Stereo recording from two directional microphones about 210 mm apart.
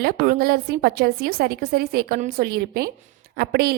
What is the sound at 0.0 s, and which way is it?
A woman's voice, 45° right (ahead or behind).